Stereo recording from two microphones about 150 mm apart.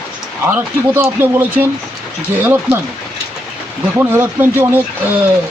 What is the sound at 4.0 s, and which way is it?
Speech, 15° right (ahead or behind).